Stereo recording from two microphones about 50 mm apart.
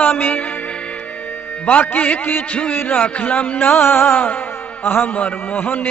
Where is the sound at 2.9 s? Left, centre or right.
Left.